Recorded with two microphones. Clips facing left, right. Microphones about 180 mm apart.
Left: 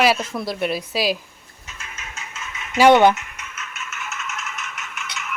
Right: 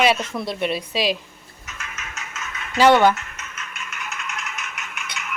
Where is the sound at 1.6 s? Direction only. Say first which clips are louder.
Right 2 dB; 30° left (ahead or behind).